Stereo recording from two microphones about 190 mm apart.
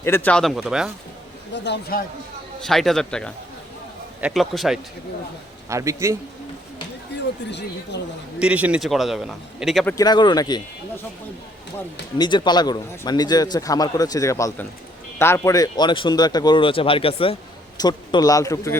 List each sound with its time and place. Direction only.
0.0 s a man's voice: 10° left (ahead or behind)
1.5 s a man's voice: 65° left (ahead or behind)
2.6 s a man's voice: centre (ahead or behind)
5.6 s a man's voice: 15° right (ahead or behind)
7.9 s a man's voice: 65° left (ahead or behind)
8.4 s a man's voice: 5° right (ahead or behind)
9.8 s a man's voice: 20° left (ahead or behind)
12.1 s a man's voice: 20° left (ahead or behind)